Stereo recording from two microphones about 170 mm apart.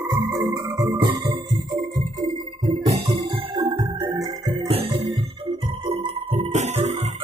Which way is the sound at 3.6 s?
20° right (ahead or behind).